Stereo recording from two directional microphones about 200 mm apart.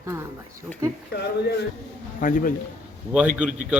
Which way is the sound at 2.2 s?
45° left (ahead or behind).